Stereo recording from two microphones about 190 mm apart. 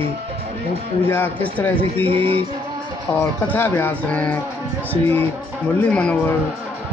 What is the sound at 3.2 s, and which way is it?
Speech, 10° left (ahead or behind).